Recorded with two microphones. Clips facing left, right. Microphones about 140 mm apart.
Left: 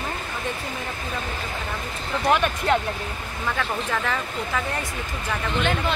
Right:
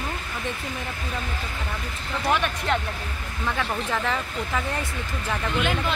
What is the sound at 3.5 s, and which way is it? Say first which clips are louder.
Speech: even; 20° right (ahead or behind).